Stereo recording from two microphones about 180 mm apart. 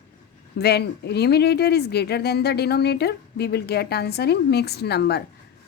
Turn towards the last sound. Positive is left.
turn(degrees=65)  # may be behind; listen again after turning